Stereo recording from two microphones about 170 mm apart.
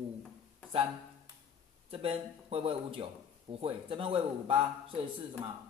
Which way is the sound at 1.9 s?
35° right (ahead or behind).